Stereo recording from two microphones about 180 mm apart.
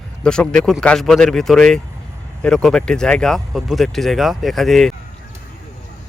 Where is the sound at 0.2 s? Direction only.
5° left (ahead or behind).